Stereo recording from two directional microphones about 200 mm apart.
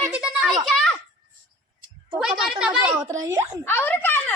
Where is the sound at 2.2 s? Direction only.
Centre (ahead or behind).